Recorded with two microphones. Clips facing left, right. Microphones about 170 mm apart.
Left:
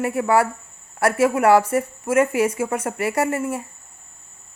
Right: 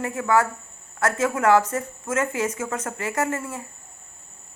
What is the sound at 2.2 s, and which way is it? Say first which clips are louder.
Speech: left 7 dB; 30° left (ahead or behind).